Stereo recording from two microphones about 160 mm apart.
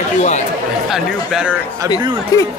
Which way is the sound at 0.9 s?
5° right (ahead or behind).